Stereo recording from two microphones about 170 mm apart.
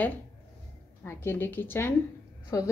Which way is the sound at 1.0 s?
15° left (ahead or behind).